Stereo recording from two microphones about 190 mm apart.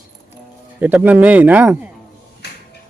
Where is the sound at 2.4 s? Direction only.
60° left (ahead or behind).